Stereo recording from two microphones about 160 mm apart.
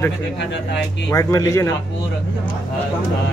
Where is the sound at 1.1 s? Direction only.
20° left (ahead or behind).